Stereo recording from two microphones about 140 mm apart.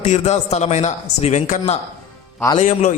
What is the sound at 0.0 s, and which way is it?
A man's voice, 55° left (ahead or behind).